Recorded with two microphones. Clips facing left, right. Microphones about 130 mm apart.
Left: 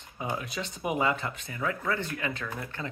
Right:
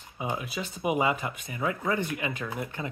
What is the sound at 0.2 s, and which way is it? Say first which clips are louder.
Speech: right 1 dB; 5° right (ahead or behind).